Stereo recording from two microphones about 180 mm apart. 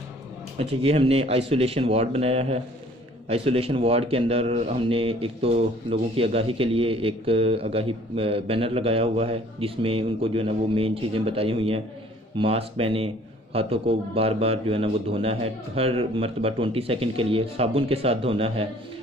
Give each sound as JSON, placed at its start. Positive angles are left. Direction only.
{"t": 0.6, "sound": "a man's voice", "side_deg": -30}